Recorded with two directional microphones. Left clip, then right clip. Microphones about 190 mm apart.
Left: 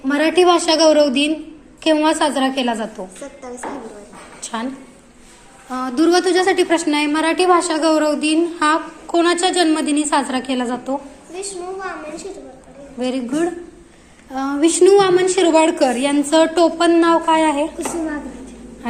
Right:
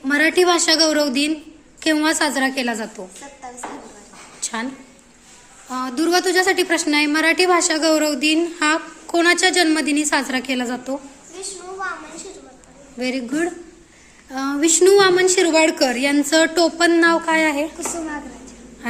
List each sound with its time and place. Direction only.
0.0 s a woman's voice: 20° right (ahead or behind)
4.4 s a sound: 20° right (ahead or behind)
5.6 s a woman's voice: 10° right (ahead or behind)
11.8 s a child's voice: centre (ahead or behind)
13.0 s a woman's voice: 25° right (ahead or behind)